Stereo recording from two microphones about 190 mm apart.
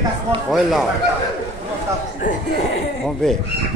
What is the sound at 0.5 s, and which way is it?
Speech, centre (ahead or behind).